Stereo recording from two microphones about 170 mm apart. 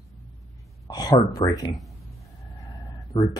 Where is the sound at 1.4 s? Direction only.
20° left (ahead or behind).